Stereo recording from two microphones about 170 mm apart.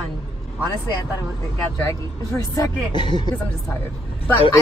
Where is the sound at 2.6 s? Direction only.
25° left (ahead or behind).